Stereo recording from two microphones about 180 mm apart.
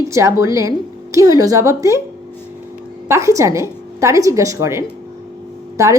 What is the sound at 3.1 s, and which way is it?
A woman's voice, 15° right (ahead or behind).